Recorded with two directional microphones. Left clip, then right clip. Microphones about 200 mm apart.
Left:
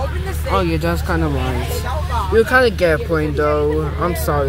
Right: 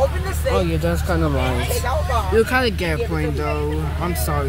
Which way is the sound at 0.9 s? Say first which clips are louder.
Left 2 dB; 15° left (ahead or behind).